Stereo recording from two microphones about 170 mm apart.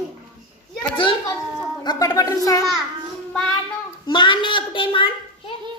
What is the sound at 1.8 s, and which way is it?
Speech, 25° left (ahead or behind).